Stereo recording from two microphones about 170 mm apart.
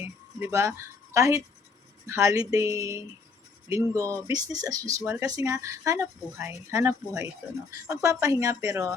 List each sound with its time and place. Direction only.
0.0 s a woman's voice: 15° right (ahead or behind)